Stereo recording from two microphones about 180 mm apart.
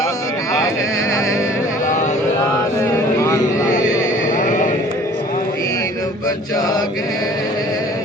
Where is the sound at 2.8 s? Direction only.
15° left (ahead or behind).